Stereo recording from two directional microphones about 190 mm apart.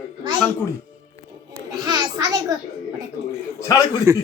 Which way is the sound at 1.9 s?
20° right (ahead or behind).